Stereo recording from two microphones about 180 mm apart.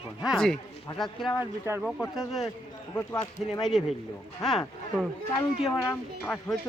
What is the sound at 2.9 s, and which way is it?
Speech, 20° left (ahead or behind).